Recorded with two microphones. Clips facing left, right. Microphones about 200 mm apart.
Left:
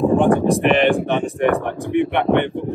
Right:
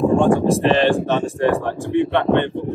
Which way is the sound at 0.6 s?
15° left (ahead or behind).